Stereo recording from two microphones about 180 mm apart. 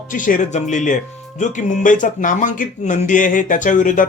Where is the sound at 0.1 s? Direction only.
45° left (ahead or behind).